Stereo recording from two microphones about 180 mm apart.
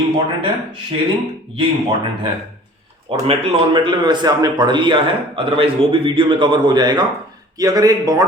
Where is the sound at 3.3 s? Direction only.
30° right (ahead or behind).